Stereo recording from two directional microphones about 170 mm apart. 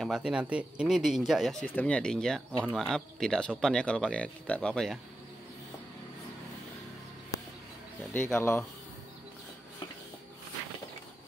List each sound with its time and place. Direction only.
0.0 s speech: 5° right (ahead or behind)
8.1 s speech: 15° left (ahead or behind)